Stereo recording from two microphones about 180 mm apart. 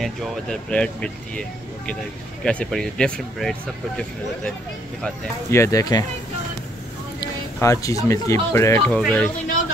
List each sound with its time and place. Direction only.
0.0 s speech: 5° left (ahead or behind)
2.4 s speech: 5° left (ahead or behind)
5.5 s speech: 15° left (ahead or behind)
7.6 s speech: 15° left (ahead or behind)